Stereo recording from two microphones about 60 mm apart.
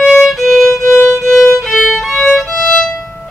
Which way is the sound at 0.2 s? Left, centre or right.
Centre.